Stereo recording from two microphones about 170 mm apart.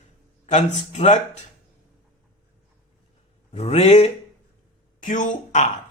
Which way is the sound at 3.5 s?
40° left (ahead or behind).